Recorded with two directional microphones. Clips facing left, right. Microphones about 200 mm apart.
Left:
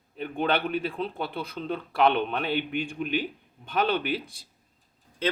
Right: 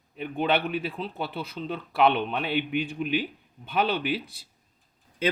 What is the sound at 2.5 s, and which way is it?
Speech, 45° left (ahead or behind).